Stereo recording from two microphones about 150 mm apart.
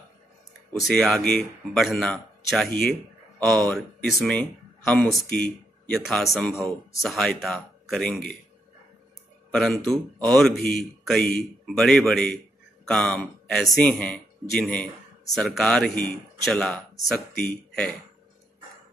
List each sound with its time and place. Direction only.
0.7 s a man's voice: centre (ahead or behind)
2.7 s speech: 90° left
3.3 s a man's voice: 5° left (ahead or behind)
9.5 s a man's voice: centre (ahead or behind)